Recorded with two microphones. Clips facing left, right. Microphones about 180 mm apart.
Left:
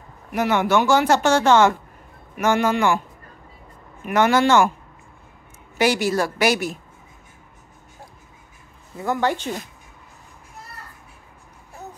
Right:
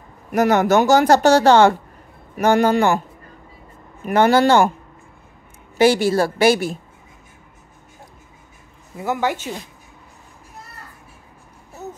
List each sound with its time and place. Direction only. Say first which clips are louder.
0.3 s speech: right 4 dB; 40° right (ahead or behind)
4.0 s speech: right 3 dB; 35° right (ahead or behind)
5.8 s a woman's voice: right 5 dB; 30° right (ahead or behind)
8.9 s speech: even; 10° right (ahead or behind)